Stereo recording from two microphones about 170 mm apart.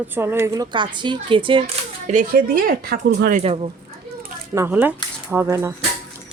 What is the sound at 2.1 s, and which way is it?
Speech, 55° right (ahead or behind).